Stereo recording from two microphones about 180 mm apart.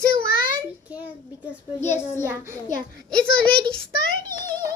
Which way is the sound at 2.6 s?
45° left (ahead or behind).